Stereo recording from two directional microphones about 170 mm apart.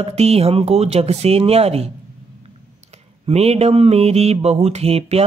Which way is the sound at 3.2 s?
35° right (ahead or behind).